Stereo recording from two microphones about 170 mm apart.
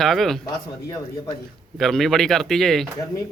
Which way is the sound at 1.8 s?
Centre (ahead or behind).